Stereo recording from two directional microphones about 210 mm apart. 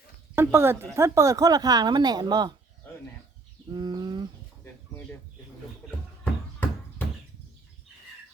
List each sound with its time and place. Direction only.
0.3 s speech: 10° right (ahead or behind)
3.7 s bird: 20° right (ahead or behind)